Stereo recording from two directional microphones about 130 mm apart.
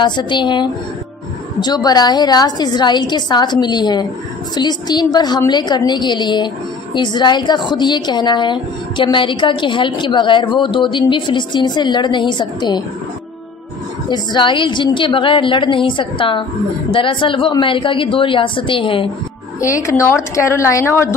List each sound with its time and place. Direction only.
0.0 s a woman's voice: 35° left (ahead or behind)
14.0 s a woman's voice: 35° left (ahead or behind)
19.6 s a woman's voice: 25° left (ahead or behind)